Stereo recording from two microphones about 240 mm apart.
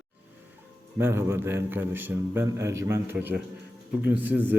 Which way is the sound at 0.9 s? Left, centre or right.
Centre.